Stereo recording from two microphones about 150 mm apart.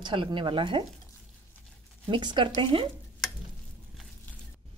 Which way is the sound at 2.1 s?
30° right (ahead or behind).